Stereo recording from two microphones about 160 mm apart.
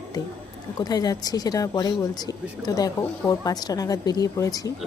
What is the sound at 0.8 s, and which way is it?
Speech, 25° left (ahead or behind).